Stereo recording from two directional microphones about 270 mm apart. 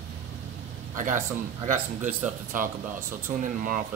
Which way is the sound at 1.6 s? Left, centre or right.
Right.